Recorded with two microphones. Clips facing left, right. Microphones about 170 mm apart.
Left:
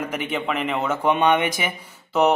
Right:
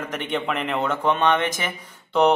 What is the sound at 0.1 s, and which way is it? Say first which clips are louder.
A man's voice: even; 5° left (ahead or behind).